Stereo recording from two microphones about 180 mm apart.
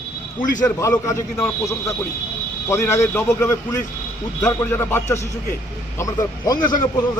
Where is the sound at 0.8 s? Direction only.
15° left (ahead or behind).